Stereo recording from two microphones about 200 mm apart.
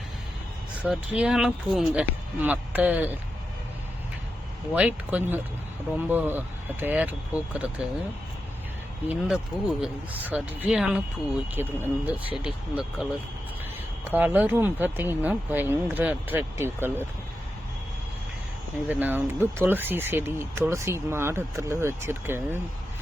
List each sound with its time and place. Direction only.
0.9 s speech: 5° right (ahead or behind)
4.7 s speech: 10° right (ahead or behind)
9.0 s speech: 5° right (ahead or behind)
18.9 s speech: 10° right (ahead or behind)